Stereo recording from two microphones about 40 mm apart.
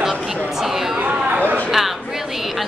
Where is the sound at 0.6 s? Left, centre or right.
Centre.